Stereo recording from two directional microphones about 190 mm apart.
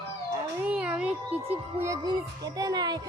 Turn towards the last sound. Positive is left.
turn(degrees=-20)  # may be behind; listen again after turning